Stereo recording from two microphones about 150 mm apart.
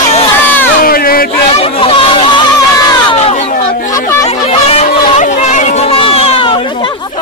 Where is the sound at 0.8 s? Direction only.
75° left (ahead or behind).